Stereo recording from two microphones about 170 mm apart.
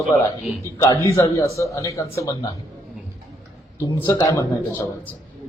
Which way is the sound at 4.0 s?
15° left (ahead or behind).